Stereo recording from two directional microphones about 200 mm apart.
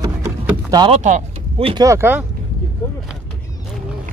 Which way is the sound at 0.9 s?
35° right (ahead or behind).